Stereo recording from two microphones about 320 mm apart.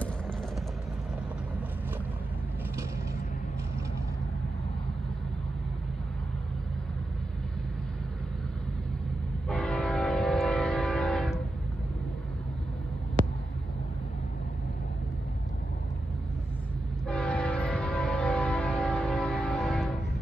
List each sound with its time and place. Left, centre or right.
9.5 s train: centre
13.2 s a sound: right
17.1 s train: centre